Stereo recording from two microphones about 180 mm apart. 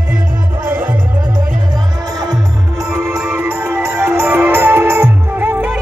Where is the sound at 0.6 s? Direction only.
10° right (ahead or behind).